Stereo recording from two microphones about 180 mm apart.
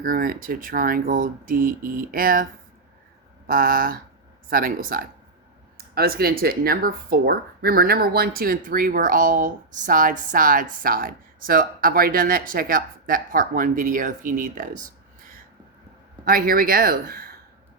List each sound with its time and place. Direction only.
0.0 s speech: 50° right (ahead or behind)
16.2 s speech: 55° right (ahead or behind)